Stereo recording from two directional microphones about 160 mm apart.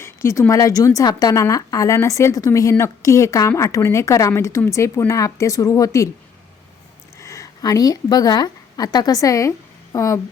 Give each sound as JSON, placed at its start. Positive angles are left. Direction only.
{"t": 0.0, "sound": "a woman's voice", "side_deg": 15}
{"t": 7.2, "sound": "a woman's voice", "side_deg": 20}